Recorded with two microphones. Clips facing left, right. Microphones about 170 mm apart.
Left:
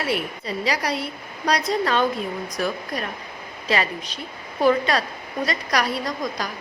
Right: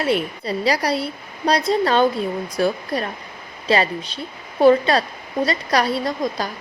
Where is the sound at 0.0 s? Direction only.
30° right (ahead or behind).